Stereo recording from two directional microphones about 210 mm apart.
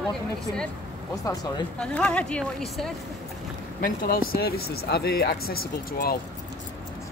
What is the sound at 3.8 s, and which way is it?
Speech, 45° left (ahead or behind).